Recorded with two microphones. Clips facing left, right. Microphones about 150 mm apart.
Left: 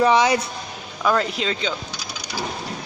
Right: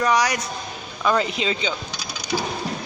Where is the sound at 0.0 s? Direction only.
25° left (ahead or behind).